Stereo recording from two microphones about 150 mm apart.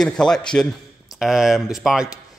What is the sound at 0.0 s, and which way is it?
A man's voice, 5° left (ahead or behind).